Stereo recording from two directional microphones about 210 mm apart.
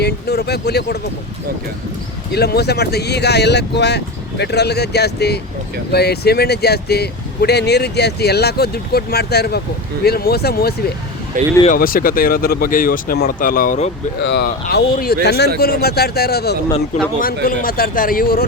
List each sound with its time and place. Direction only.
0.0 s a sound: 50° left (ahead or behind)
2.3 s speech: 50° left (ahead or behind)
14.2 s speech: 55° left (ahead or behind)